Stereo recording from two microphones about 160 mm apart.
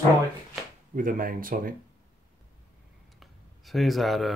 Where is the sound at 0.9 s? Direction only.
60° right (ahead or behind).